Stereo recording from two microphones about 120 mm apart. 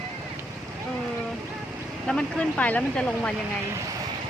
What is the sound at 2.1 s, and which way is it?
Speech, 10° left (ahead or behind).